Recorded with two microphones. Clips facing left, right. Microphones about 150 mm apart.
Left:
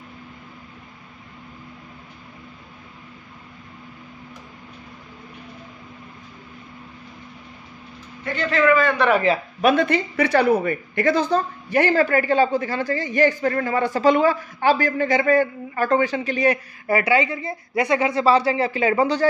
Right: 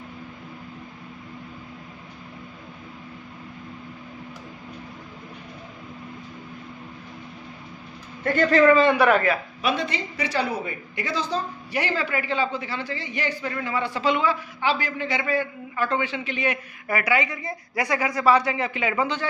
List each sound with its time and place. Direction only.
8.2 s speech: 45° right (ahead or behind)
9.0 s a man's voice: 5° right (ahead or behind)
9.6 s a woman's voice: 50° left (ahead or behind)